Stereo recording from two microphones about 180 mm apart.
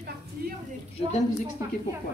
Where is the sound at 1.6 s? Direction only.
15° right (ahead or behind).